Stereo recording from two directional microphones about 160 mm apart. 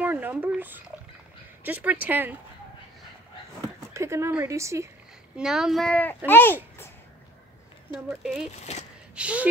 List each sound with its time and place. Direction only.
0.0 s speech: 10° right (ahead or behind)
3.9 s speech: 15° right (ahead or behind)
5.3 s speech: 5° right (ahead or behind); by 6.9 s 10° left (ahead or behind)
7.9 s speech: 5° right (ahead or behind)
8.5 s speech: 45° left (ahead or behind)
9.1 s speech: 5° right (ahead or behind)